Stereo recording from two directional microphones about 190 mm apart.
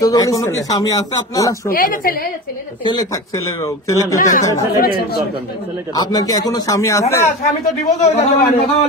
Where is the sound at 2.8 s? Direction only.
20° left (ahead or behind).